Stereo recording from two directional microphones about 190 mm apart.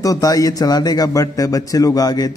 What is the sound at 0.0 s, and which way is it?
Speech, 20° left (ahead or behind).